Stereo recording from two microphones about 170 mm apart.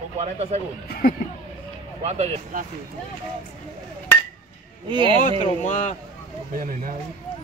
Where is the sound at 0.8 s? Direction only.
60° left (ahead or behind).